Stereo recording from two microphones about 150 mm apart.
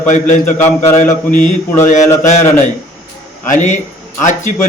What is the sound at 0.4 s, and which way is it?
Speech, 10° left (ahead or behind).